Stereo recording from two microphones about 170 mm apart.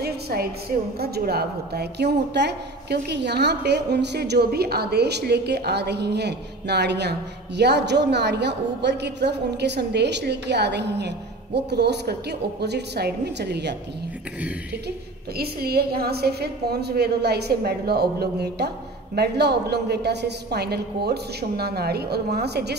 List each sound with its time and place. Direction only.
0.0 s a woman's voice: 65° right (ahead or behind); by 13.7 s 80° right
15.3 s a woman's voice: 65° right (ahead or behind)